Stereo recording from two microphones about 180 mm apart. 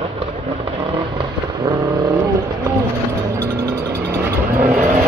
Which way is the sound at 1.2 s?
20° right (ahead or behind).